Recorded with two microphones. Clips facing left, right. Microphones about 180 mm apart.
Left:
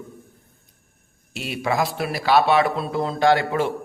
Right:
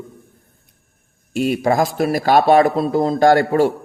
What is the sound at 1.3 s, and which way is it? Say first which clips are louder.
Speech: right 7 dB; 45° right (ahead or behind).